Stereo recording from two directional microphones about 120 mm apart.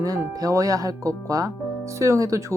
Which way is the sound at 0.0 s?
30° right (ahead or behind).